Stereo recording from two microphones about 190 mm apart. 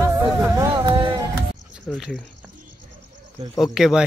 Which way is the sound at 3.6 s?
Centre (ahead or behind).